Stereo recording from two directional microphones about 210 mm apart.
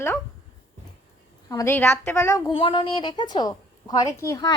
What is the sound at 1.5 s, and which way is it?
A woman's voice, 15° left (ahead or behind).